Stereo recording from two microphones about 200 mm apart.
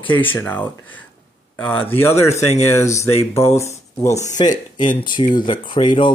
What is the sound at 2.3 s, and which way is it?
Speech, 35° left (ahead or behind).